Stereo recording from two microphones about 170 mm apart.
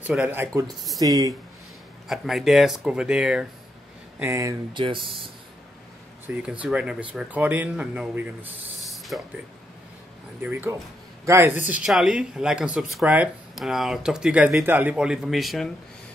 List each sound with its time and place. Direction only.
0.0 s speech: 10° right (ahead or behind)
0.9 s speech: 20° right (ahead or behind)
2.0 s speech: centre (ahead or behind)
4.2 s speech: 15° right (ahead or behind)
4.8 s speech: 30° right (ahead or behind)
6.2 s speech: 10° right (ahead or behind)
8.7 s a sound: centre (ahead or behind)
10.4 s speech: 10° right (ahead or behind)